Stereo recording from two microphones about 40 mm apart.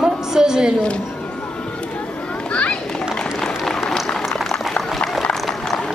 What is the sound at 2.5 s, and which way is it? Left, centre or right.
Children playing, left.